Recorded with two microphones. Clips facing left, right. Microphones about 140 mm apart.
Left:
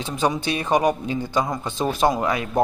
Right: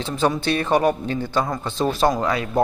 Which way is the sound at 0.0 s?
15° left (ahead or behind).